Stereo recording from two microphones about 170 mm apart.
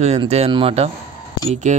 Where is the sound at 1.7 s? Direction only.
45° right (ahead or behind).